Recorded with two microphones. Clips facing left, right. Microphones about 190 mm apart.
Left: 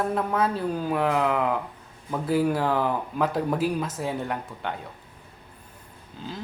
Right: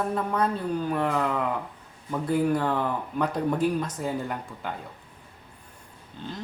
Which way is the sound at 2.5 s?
5° left (ahead or behind).